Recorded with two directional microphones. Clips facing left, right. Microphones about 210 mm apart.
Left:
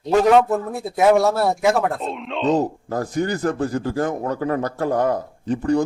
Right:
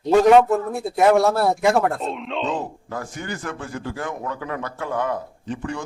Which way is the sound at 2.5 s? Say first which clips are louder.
Left 8 dB; 40° left (ahead or behind).